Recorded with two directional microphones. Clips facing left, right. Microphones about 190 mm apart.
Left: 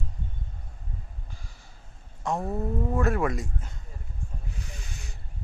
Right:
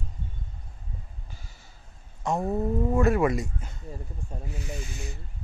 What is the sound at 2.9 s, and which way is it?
Speech, centre (ahead or behind).